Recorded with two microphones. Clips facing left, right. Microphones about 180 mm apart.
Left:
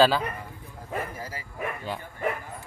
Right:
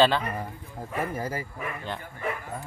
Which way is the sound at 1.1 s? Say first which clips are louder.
Right 7 dB; 50° right (ahead or behind).